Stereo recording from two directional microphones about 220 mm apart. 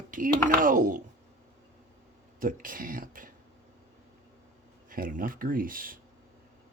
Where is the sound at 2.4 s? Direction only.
40° right (ahead or behind).